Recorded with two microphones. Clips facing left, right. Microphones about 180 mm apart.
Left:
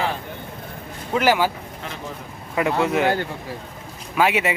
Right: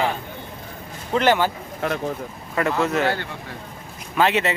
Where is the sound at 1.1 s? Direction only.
5° left (ahead or behind).